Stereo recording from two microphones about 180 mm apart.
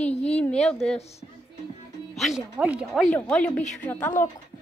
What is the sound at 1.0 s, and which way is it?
Speech, 35° left (ahead or behind).